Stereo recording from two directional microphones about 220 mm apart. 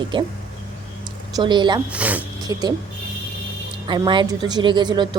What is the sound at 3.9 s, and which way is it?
Speech, 20° right (ahead or behind).